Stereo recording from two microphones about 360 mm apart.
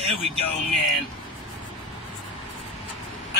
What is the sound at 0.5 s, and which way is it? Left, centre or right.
Speech, centre.